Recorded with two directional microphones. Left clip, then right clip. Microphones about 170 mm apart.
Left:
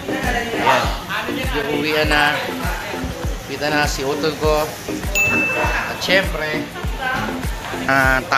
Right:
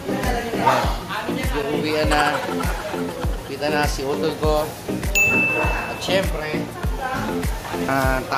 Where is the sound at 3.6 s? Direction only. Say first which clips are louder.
Left 3 dB; 20° left (ahead or behind).